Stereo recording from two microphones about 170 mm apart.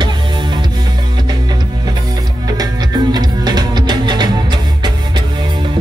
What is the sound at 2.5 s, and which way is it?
Music, 25° right (ahead or behind).